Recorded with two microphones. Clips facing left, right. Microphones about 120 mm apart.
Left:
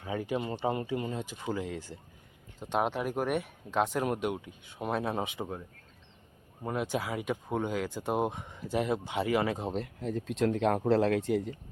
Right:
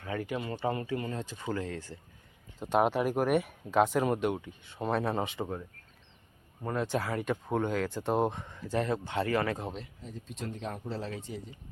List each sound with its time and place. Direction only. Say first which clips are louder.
0.0 s speech: left 2 dB; 15° left (ahead or behind)
2.6 s speech: right 4 dB; centre (ahead or behind); by 9.7 s 20° left (ahead or behind)
10.0 s speech: left 11 dB; 75° left (ahead or behind)